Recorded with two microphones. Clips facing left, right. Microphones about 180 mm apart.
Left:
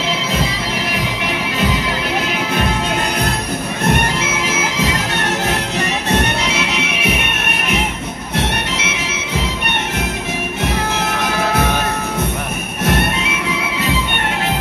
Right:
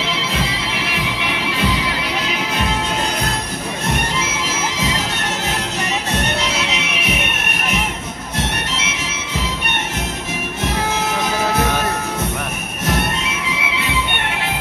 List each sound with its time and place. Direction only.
4.2 s bagpipes: 60° left (ahead or behind)
6.4 s music: 55° left (ahead or behind)
8.7 s music: 60° left (ahead or behind)